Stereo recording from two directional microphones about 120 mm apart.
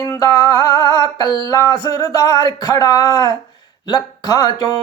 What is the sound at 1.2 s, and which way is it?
Speech, 35° left (ahead or behind).